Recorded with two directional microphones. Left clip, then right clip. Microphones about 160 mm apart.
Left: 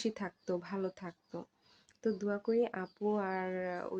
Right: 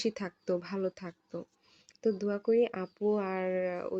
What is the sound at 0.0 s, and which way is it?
Speech, 15° right (ahead or behind).